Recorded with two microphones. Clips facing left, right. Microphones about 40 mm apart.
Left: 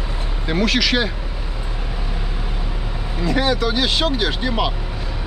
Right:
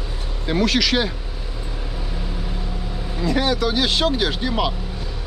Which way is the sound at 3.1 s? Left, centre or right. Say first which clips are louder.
Left 1 dB; centre.